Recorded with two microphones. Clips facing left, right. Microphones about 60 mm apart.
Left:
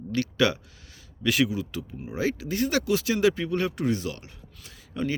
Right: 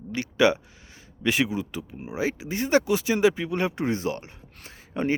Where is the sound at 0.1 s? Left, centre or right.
Centre.